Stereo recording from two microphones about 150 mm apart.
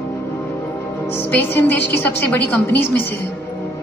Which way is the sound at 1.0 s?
15° left (ahead or behind).